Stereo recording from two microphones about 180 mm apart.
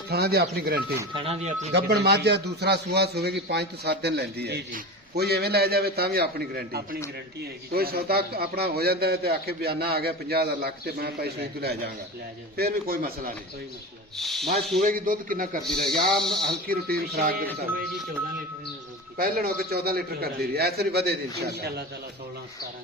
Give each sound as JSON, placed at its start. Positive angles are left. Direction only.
{"t": 0.1, "sound": "a man's voice", "side_deg": -60}
{"t": 1.1, "sound": "speech", "side_deg": -30}
{"t": 1.7, "sound": "a man's voice", "side_deg": -65}
{"t": 14.2, "sound": "speech", "side_deg": 0}
{"t": 14.8, "sound": "speech", "side_deg": -50}
{"t": 16.1, "sound": "speech", "side_deg": 0}
{"t": 16.6, "sound": "a man's voice", "side_deg": -60}
{"t": 19.1, "sound": "a man's voice", "side_deg": -55}